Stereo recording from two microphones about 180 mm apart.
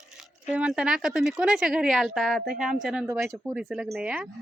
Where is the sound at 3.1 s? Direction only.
15° right (ahead or behind).